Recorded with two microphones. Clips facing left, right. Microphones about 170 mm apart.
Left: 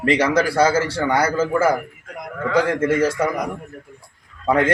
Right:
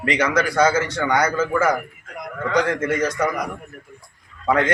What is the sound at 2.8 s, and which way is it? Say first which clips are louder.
Speech: left 4 dB; 30° left (ahead or behind).